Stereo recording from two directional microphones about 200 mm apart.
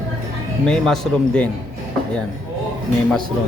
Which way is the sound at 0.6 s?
5° left (ahead or behind).